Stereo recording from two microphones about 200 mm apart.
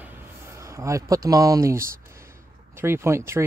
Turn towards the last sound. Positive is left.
turn(degrees=-15)  # may be behind; listen again after turning